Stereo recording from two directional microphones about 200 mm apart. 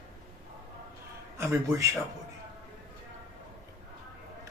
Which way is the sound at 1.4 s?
15° right (ahead or behind).